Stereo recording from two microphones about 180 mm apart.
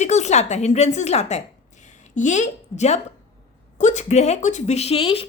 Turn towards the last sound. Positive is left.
turn(degrees=30)  # may be behind; listen again after turning